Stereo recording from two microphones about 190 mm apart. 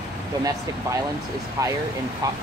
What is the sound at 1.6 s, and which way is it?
Speech, 15° right (ahead or behind).